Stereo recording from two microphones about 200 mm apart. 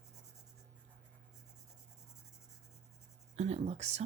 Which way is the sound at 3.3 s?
30° right (ahead or behind).